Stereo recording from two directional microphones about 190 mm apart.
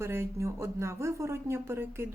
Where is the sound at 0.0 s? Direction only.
15° right (ahead or behind).